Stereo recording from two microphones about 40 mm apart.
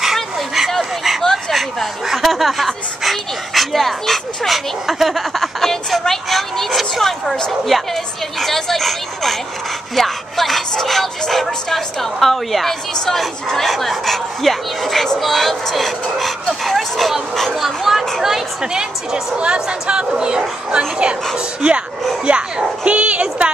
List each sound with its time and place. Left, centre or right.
0.0 s dog: centre
1.5 s speech: centre
4.8 s a sound: centre
7.2 s speech: centre
7.6 s music: centre
12.9 s speech: centre
13.2 s music: centre
18.6 s a child's voice: centre